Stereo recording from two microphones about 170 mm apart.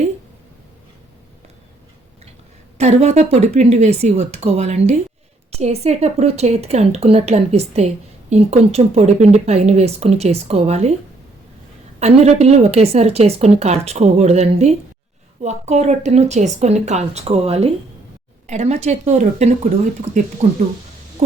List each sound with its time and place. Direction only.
2.7 s a woman's voice: 40° right (ahead or behind)
11.9 s a woman's voice: 40° right (ahead or behind)